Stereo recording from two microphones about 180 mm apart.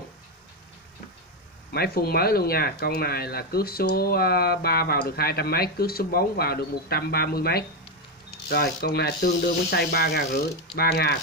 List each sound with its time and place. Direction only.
1.7 s speech: 60° left (ahead or behind)